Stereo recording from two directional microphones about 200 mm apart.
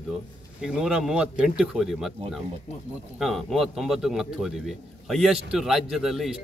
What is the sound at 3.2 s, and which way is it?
A man's voice, centre (ahead or behind).